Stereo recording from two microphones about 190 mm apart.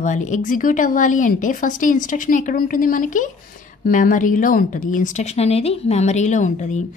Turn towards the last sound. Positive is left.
turn(degrees=40)  # may be behind; listen again after turning